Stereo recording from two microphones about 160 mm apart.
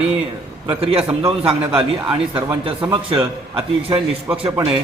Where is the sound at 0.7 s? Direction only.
35° right (ahead or behind).